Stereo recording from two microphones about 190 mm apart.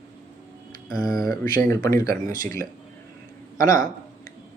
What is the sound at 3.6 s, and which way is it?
Speech, 20° left (ahead or behind).